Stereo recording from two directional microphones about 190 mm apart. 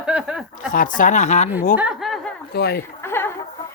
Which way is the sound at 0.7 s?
45° left (ahead or behind).